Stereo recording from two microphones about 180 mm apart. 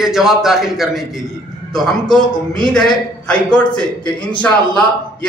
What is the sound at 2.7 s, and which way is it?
Speech, 5° left (ahead or behind).